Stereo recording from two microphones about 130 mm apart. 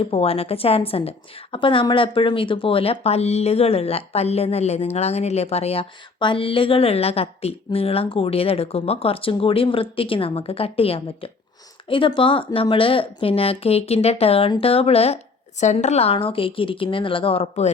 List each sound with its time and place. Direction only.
0.0 s a woman's voice: 50° left (ahead or behind)
6.1 s a woman's voice: 40° left (ahead or behind)
15.6 s a woman's voice: 65° left (ahead or behind)